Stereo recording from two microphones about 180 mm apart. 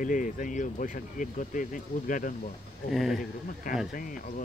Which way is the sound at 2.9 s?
Centre (ahead or behind).